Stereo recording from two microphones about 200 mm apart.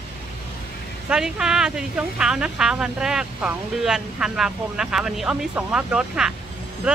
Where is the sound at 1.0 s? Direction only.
5° right (ahead or behind).